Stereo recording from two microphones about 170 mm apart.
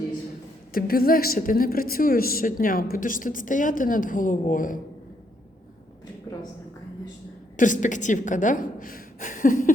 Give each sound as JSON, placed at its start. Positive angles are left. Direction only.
{"t": 0.7, "sound": "a woman's voice", "side_deg": 60}
{"t": 7.5, "sound": "a woman's voice", "side_deg": 50}